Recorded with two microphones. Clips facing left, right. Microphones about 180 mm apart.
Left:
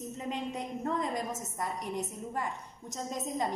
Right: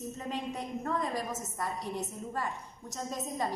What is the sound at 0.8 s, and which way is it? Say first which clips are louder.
A woman's voice: left 1 dB; 20° left (ahead or behind).